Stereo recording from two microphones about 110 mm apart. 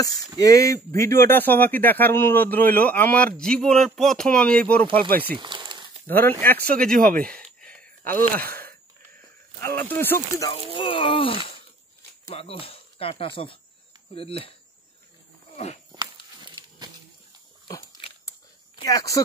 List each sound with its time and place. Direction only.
0.4 s speech: 30° left (ahead or behind); by 4.8 s 10° left (ahead or behind)
5.0 s speech: 45° right (ahead or behind)
6.0 s speech: 20° left (ahead or behind)
7.6 s a sound: 10° left (ahead or behind)
9.6 s speech: 20° left (ahead or behind)
10.7 s speech: 50° left (ahead or behind)
12.4 s speech: 60° left (ahead or behind)
15.5 s speech: 80° left
15.9 s a sound: 40° right (ahead or behind)
18.9 s speech: 30° left (ahead or behind)